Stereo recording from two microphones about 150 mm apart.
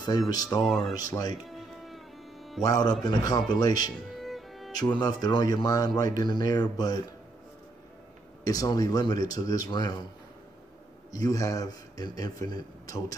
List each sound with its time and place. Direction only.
0.3 s a man's voice: 25° left (ahead or behind)
0.6 s speech: centre (ahead or behind)
0.9 s a man's voice: 25° left (ahead or behind)
2.6 s a man's voice: 25° left (ahead or behind)
4.2 s music: centre (ahead or behind)
4.7 s a man's voice: 25° left (ahead or behind)
8.5 s a man's voice: 25° left (ahead or behind)
11.1 s a man's voice: 25° left (ahead or behind)